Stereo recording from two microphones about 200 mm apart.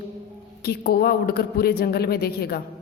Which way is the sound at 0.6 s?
50° left (ahead or behind).